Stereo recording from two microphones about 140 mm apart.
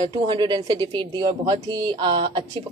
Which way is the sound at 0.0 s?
35° right (ahead or behind).